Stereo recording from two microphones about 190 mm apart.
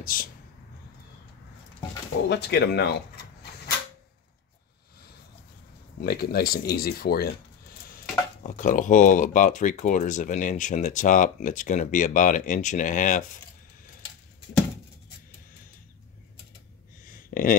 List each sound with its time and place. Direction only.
0.0 s speech: 50° left (ahead or behind)
2.2 s speech: 60° left (ahead or behind)
5.9 s speech: 55° left (ahead or behind)
8.5 s speech: 45° left (ahead or behind)
17.0 s a sound: 45° left (ahead or behind)